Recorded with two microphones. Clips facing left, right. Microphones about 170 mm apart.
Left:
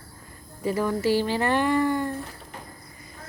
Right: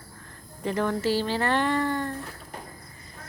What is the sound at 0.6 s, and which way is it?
Speech, 5° left (ahead or behind).